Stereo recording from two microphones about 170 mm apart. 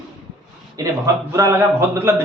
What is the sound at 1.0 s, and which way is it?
A man's voice, 15° right (ahead or behind).